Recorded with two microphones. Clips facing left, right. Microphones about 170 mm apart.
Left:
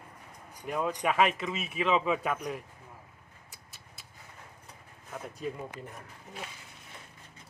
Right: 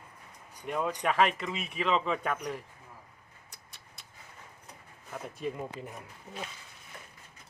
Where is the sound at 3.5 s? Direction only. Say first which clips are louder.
Left 1 dB; 5° left (ahead or behind).